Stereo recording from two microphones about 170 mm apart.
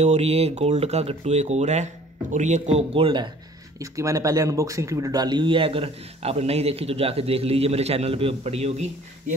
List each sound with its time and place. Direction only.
0.0 s speech: 40° right (ahead or behind)
3.8 s speech: 20° right (ahead or behind); by 8.8 s 35° right (ahead or behind)